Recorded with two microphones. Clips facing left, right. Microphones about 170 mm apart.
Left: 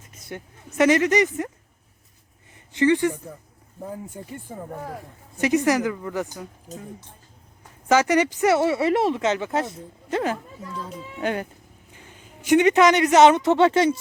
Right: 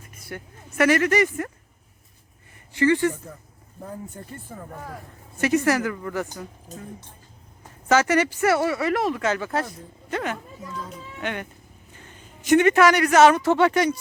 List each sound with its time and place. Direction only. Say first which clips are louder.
0.2 s speech: left 1 dB; 20° left (ahead or behind)
2.7 s speech: left 1 dB; 20° left (ahead or behind)
4.7 s speech: left 4 dB; 30° left (ahead or behind)
5.4 s speech: left 1 dB; 15° left (ahead or behind)
7.9 s speech: left 1 dB; 15° left (ahead or behind); by 11.4 s 35° left (ahead or behind)
11.9 s a man's voice: left 1 dB; 10° left (ahead or behind)